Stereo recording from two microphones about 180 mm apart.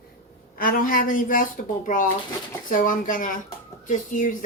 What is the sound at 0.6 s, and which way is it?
Speech, 50° left (ahead or behind).